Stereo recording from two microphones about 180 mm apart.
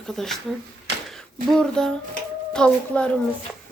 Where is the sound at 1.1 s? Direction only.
5° left (ahead or behind).